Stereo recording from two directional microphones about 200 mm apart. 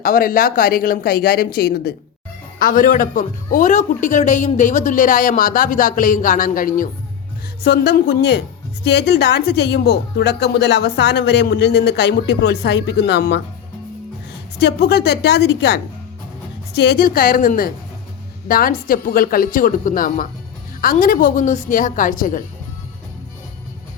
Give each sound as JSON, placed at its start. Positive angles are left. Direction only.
{"t": 0.0, "sound": "a woman's voice", "side_deg": 45}
{"t": 14.6, "sound": "a woman's voice", "side_deg": 55}